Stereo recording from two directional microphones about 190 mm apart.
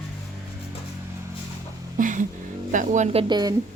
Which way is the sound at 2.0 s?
45° right (ahead or behind).